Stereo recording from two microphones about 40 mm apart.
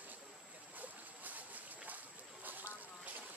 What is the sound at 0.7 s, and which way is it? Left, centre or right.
Boat, right.